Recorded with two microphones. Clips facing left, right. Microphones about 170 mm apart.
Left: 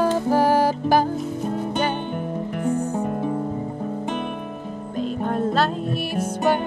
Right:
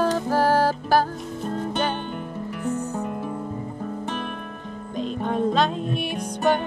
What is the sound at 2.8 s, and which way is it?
Music, 35° left (ahead or behind).